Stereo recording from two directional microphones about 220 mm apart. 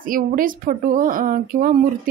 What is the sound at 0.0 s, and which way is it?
Speech, 40° right (ahead or behind).